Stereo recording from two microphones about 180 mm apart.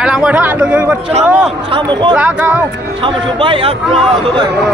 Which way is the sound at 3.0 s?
30° right (ahead or behind).